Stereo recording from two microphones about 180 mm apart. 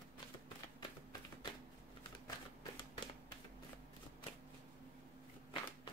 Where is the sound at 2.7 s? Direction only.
25° left (ahead or behind).